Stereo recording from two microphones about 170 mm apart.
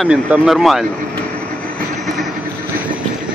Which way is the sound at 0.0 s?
5° right (ahead or behind).